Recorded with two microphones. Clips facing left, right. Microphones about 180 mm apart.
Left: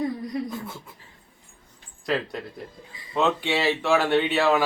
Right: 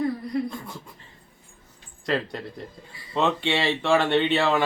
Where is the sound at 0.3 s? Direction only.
20° left (ahead or behind).